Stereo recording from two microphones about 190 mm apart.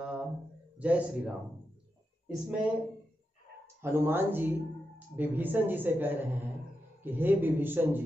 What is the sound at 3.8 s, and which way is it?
A man's voice, 10° right (ahead or behind).